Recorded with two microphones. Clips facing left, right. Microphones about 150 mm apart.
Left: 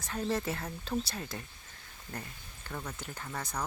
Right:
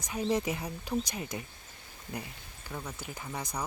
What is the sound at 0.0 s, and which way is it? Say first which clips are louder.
Speech: right 3 dB; 15° right (ahead or behind).